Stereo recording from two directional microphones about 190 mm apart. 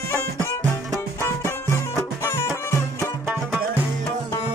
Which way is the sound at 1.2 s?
15° left (ahead or behind).